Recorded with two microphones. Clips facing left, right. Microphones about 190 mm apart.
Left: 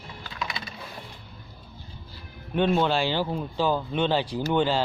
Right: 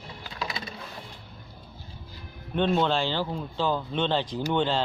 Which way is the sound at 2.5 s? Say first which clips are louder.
Left 1 dB; 5° left (ahead or behind).